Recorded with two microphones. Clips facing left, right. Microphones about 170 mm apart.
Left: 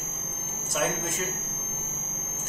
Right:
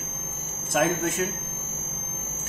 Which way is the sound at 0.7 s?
60° right (ahead or behind).